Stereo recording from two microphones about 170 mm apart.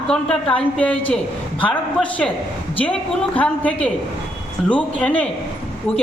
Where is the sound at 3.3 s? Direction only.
10° left (ahead or behind).